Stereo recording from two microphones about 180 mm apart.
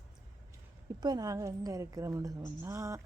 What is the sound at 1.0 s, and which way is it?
A woman's voice, 20° right (ahead or behind).